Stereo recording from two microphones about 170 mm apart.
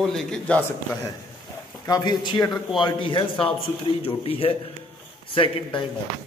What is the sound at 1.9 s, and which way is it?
A man's voice, 25° left (ahead or behind).